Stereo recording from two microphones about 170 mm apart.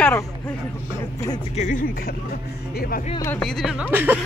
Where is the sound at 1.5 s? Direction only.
50° left (ahead or behind).